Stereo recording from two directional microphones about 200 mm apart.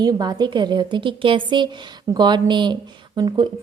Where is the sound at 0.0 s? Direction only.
20° right (ahead or behind).